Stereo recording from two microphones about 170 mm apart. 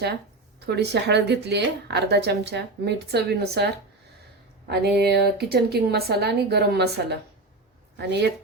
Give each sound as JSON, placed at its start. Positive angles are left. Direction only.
{"t": 0.6, "sound": "speech", "side_deg": -75}
{"t": 4.7, "sound": "a woman's voice", "side_deg": -75}